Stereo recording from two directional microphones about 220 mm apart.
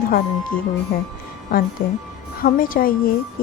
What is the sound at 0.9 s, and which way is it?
Speech, 40° left (ahead or behind).